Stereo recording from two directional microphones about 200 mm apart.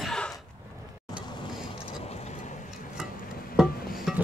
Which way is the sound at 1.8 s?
30° left (ahead or behind).